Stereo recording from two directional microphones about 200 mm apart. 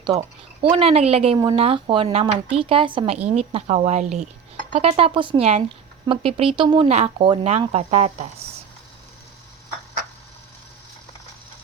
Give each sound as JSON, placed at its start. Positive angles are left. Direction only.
{"t": 0.0, "sound": "speech", "side_deg": -20}